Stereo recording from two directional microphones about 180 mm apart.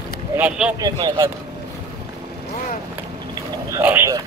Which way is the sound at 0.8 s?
20° right (ahead or behind).